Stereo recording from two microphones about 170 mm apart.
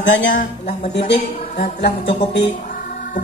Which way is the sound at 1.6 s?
75° left (ahead or behind).